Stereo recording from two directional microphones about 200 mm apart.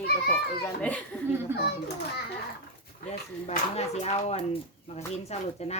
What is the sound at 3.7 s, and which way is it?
Speech, 35° left (ahead or behind).